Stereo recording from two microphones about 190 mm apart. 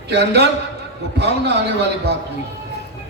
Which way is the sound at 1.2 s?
60° right (ahead or behind).